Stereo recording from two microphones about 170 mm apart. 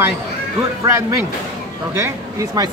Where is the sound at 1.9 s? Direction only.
20° right (ahead or behind).